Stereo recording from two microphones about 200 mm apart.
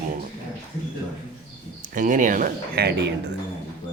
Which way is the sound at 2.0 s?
40° right (ahead or behind).